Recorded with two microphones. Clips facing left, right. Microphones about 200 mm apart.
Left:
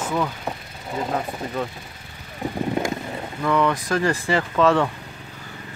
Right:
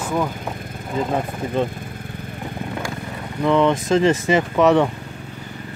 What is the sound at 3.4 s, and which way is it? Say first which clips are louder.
Speech: right 4 dB; 25° right (ahead or behind).